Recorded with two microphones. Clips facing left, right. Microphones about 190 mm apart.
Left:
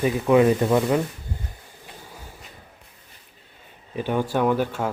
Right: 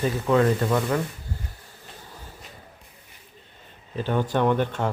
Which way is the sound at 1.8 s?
10° left (ahead or behind).